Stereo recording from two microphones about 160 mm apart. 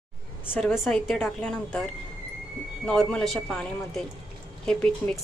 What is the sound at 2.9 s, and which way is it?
Speech, 5° left (ahead or behind).